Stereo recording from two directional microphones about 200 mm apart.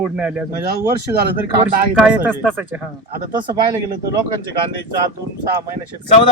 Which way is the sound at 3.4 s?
20° right (ahead or behind).